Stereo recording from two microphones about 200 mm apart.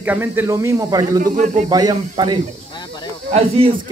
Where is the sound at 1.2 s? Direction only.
40° right (ahead or behind).